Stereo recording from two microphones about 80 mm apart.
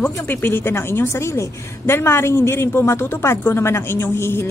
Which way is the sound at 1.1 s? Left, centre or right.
Left.